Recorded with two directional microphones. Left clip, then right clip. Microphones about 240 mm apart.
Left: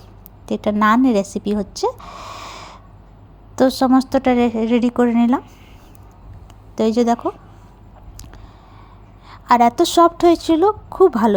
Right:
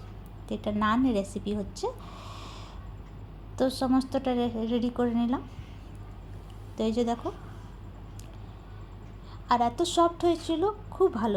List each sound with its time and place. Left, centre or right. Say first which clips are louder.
0.4 s a woman's voice: left 12 dB; left
6.7 s a woman's voice: left 12 dB; left
9.3 s a woman's voice: left 12 dB; left